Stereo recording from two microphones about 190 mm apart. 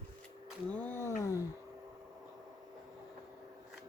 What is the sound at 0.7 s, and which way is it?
Speech, 10° left (ahead or behind).